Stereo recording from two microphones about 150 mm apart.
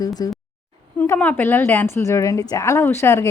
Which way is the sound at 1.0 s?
10° left (ahead or behind).